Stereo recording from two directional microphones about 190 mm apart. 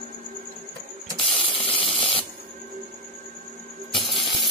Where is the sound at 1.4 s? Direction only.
30° left (ahead or behind).